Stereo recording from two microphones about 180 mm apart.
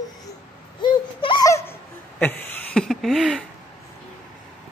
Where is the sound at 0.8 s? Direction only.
25° left (ahead or behind); by 3.4 s centre (ahead or behind).